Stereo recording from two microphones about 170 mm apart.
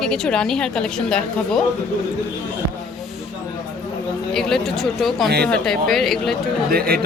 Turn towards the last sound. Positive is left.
turn(degrees=-60)  # may be behind; listen again after turning